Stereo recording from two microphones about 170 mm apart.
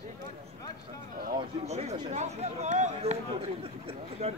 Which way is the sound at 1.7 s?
40° right (ahead or behind).